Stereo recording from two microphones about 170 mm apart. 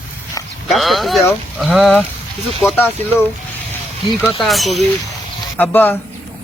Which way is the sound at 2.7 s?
15° left (ahead or behind).